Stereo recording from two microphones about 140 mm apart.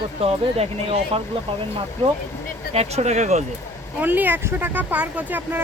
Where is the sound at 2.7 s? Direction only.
50° right (ahead or behind).